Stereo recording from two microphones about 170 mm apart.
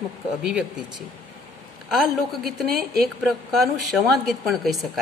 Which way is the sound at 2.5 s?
Centre (ahead or behind).